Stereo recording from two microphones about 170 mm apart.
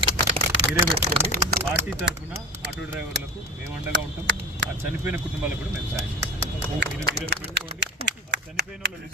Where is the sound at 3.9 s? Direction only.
90° right.